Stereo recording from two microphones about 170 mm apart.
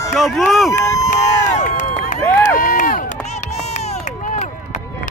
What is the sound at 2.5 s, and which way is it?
Run, 55° left (ahead or behind).